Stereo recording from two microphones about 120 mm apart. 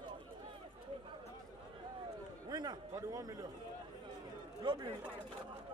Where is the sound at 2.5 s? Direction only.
35° right (ahead or behind).